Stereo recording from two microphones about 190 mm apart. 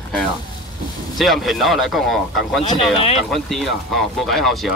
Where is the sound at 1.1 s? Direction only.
Centre (ahead or behind).